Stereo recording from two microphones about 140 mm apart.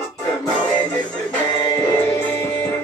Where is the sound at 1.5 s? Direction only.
20° left (ahead or behind).